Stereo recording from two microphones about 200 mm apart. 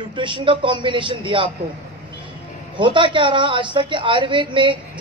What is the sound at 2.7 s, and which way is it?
A man's voice, 25° right (ahead or behind).